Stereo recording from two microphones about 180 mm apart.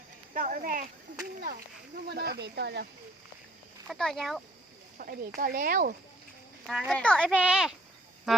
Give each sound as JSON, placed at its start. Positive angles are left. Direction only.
{"t": 0.3, "sound": "speech", "side_deg": -50}
{"t": 2.0, "sound": "speech", "side_deg": -60}
{"t": 3.8, "sound": "speech", "side_deg": 0}
{"t": 4.9, "sound": "speech", "side_deg": -55}
{"t": 6.7, "sound": "speech", "side_deg": 0}
{"t": 7.3, "sound": "speech", "side_deg": -5}